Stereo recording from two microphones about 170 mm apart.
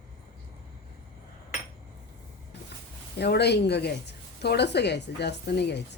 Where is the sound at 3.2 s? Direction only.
75° left (ahead or behind).